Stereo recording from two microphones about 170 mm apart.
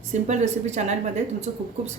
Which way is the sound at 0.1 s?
45° right (ahead or behind).